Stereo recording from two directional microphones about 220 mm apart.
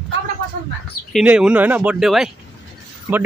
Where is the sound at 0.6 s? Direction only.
45° right (ahead or behind).